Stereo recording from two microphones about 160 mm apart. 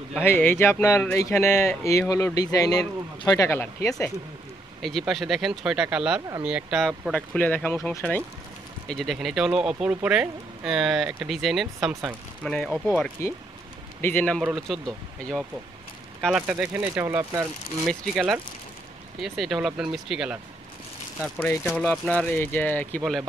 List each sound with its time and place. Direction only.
0.2 s speech: 10° left (ahead or behind)
4.8 s speech: centre (ahead or behind)
12.8 s speech: 15° left (ahead or behind); by 17.5 s 15° right (ahead or behind)
17.8 s speech: 5° right (ahead or behind)
21.4 s speech: 10° left (ahead or behind)
21.9 s speech: centre (ahead or behind)
22.2 s speech: 10° left (ahead or behind)